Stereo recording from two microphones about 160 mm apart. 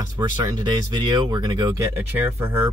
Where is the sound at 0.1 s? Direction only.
25° right (ahead or behind).